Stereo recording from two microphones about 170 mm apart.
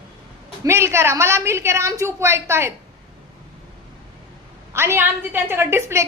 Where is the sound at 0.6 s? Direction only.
15° right (ahead or behind).